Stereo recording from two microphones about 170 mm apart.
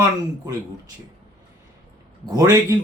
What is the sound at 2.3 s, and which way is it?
Speech, 20° right (ahead or behind).